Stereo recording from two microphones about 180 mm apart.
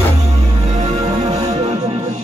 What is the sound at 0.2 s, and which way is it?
Music, 35° right (ahead or behind).